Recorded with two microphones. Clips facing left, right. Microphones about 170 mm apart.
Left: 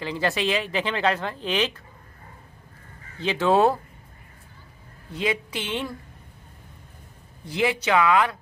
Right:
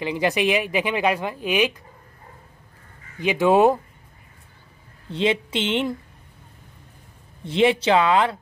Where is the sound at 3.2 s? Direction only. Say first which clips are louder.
Right 3 dB; 15° right (ahead or behind).